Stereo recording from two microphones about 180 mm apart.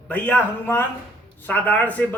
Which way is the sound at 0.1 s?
10° left (ahead or behind).